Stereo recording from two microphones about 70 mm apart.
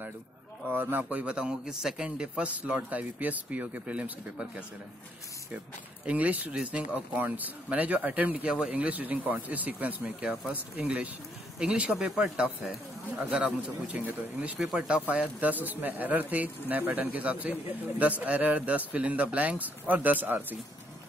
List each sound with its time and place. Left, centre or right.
0.7 s speech: right
1.2 s a man's voice: centre
6.0 s a man's voice: right
15.0 s speech: right